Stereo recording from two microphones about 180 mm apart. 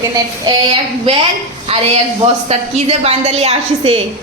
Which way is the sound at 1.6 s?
35° right (ahead or behind).